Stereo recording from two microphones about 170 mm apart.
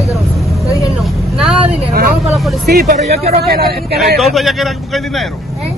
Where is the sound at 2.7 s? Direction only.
65° right (ahead or behind).